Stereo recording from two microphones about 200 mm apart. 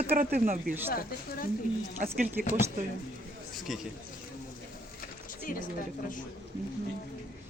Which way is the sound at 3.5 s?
Centre (ahead or behind).